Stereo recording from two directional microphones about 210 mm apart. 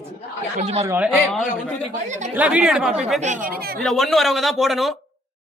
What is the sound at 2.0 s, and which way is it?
Speech, 35° right (ahead or behind).